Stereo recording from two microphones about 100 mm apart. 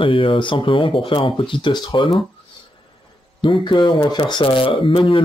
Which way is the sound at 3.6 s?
50° left (ahead or behind).